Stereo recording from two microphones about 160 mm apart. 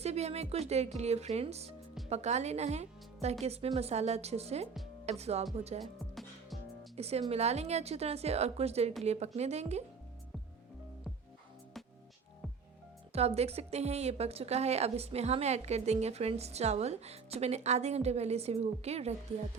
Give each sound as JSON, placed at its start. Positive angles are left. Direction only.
{"t": 0.0, "sound": "a woman's voice", "side_deg": -40}
{"t": 5.8, "sound": "music", "side_deg": 0}
{"t": 6.9, "sound": "a woman's voice", "side_deg": -40}
{"t": 13.1, "sound": "a woman's voice", "side_deg": -40}